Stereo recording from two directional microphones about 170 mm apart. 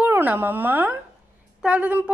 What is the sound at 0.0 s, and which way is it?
Speech, 10° right (ahead or behind).